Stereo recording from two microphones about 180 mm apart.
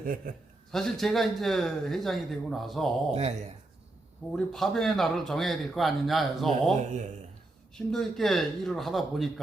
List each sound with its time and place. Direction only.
0.0 s a man's voice: 50° right (ahead or behind)
0.7 s speech: centre (ahead or behind)
3.1 s speech: 35° right (ahead or behind)
4.3 s speech: centre (ahead or behind)
6.8 s speech: 40° right (ahead or behind)
7.9 s speech: centre (ahead or behind)